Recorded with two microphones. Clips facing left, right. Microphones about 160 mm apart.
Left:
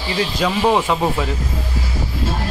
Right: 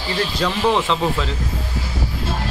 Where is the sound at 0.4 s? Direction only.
15° left (ahead or behind).